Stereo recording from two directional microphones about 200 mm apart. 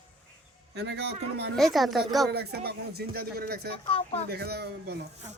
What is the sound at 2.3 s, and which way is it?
A man's voice, 55° right (ahead or behind).